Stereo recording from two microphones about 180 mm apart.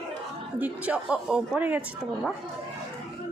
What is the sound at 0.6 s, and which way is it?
Speech, 10° right (ahead or behind).